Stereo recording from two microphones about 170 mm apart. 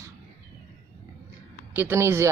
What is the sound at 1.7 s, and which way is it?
Speech, 15° right (ahead or behind).